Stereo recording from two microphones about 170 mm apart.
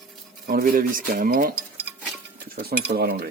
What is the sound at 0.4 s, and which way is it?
Speech, 55° right (ahead or behind).